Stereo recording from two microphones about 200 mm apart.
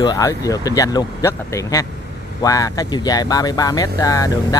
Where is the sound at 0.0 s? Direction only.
20° left (ahead or behind).